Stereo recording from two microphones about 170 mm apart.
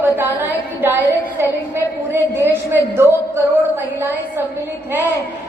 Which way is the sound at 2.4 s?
10° right (ahead or behind).